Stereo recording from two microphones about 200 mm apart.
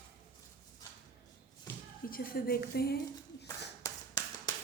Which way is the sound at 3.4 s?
15° left (ahead or behind).